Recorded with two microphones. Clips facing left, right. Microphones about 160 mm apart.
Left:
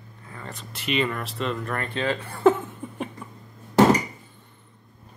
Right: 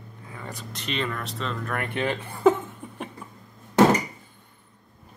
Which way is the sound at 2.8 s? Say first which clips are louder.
Left 4 dB; centre (ahead or behind).